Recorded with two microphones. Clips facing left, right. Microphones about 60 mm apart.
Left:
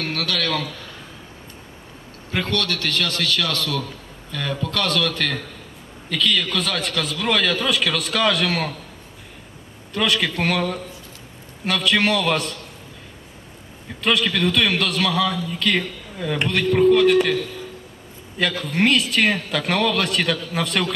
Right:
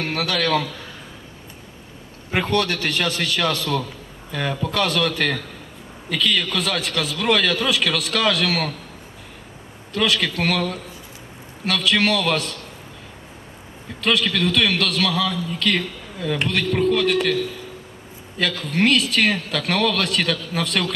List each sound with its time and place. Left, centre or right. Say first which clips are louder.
0.0 s a man's voice: right 2 dB; right
2.3 s a man's voice: right 3 dB; right; by 8.7 s centre
9.9 s a man's voice: even; centre
14.0 s a man's voice: even; centre
18.3 s a man's voice: even; centre